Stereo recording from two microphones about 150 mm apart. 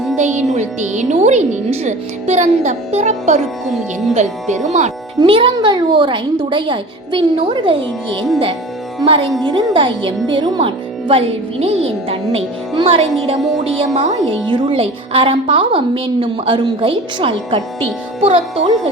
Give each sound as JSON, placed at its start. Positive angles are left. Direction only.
{"t": 0.2, "sound": "speech", "side_deg": -50}
{"t": 5.2, "sound": "a woman's voice", "side_deg": -35}